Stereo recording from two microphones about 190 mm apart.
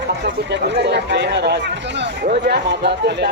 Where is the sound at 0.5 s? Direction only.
65° right (ahead or behind).